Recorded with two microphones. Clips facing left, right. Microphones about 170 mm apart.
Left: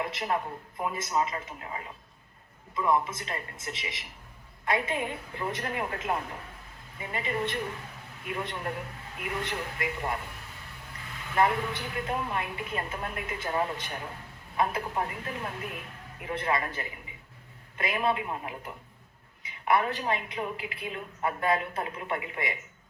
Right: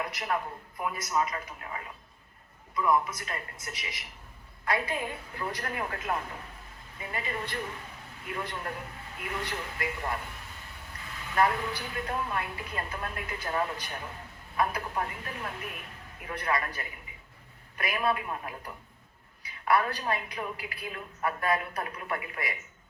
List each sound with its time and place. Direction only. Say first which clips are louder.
0.0 s a woman's voice: left 2 dB; 25° left (ahead or behind)
11.3 s a woman's voice: left 1 dB; 20° left (ahead or behind)